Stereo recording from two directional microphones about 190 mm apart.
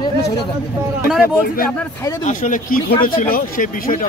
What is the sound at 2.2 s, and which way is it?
Speech, 45° left (ahead or behind).